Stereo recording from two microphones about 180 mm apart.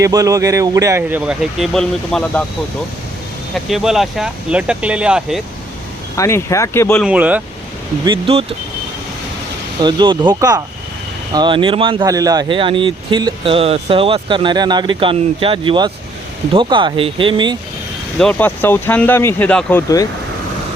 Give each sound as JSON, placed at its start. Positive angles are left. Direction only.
{"t": 0.0, "sound": "speech", "side_deg": -20}
{"t": 3.5, "sound": "speech", "side_deg": 0}
{"t": 6.1, "sound": "speech", "side_deg": 15}
{"t": 7.0, "sound": "speech", "side_deg": -5}
{"t": 8.0, "sound": "speech", "side_deg": -30}
{"t": 9.8, "sound": "speech", "side_deg": -25}
{"t": 18.2, "sound": "speech", "side_deg": 10}